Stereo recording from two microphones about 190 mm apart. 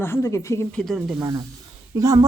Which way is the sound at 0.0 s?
15° left (ahead or behind).